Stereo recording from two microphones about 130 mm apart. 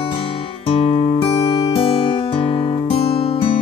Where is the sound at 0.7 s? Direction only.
45° left (ahead or behind).